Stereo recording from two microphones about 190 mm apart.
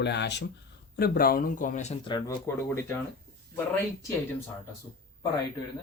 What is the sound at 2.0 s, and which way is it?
Speech, 20° left (ahead or behind).